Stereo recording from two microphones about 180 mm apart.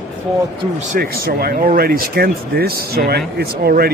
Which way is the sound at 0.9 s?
55° right (ahead or behind).